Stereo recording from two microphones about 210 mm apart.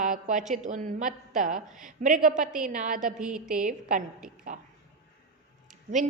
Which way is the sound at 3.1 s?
5° right (ahead or behind).